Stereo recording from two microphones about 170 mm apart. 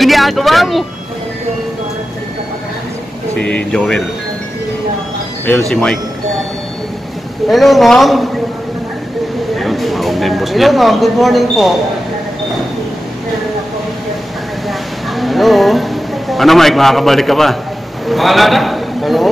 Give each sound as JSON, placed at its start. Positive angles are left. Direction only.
{"t": 0.0, "sound": "speech", "side_deg": 0}
{"t": 3.3, "sound": "a man's voice", "side_deg": 5}
{"t": 5.5, "sound": "a man's voice", "side_deg": 5}
{"t": 7.4, "sound": "a man's voice", "side_deg": 0}
{"t": 9.6, "sound": "speech", "side_deg": 0}
{"t": 14.7, "sound": "a sound", "side_deg": 0}
{"t": 18.0, "sound": "a man's voice", "side_deg": 0}